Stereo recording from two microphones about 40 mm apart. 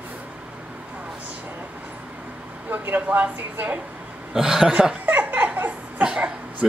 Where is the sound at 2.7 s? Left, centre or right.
Right.